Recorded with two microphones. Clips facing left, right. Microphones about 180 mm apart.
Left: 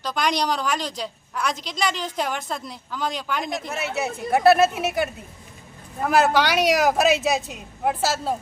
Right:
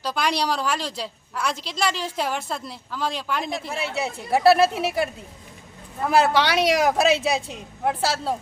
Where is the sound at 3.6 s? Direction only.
30° right (ahead or behind).